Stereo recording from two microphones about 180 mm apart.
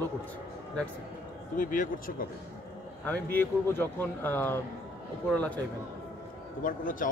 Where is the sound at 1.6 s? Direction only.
50° left (ahead or behind).